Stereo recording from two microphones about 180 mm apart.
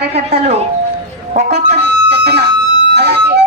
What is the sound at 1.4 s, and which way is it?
Speech, 65° right (ahead or behind).